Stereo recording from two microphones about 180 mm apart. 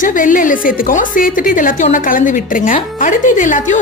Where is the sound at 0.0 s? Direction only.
50° left (ahead or behind).